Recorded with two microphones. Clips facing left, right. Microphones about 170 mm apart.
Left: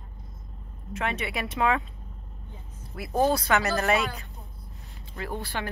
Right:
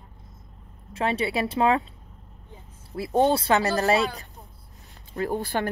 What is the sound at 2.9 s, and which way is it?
Speech, 25° right (ahead or behind).